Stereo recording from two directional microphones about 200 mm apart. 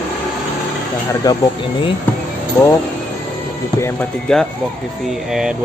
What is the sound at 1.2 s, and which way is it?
Speech, 20° left (ahead or behind).